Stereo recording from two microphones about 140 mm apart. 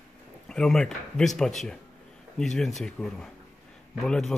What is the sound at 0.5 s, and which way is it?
A man's voice, 5° left (ahead or behind).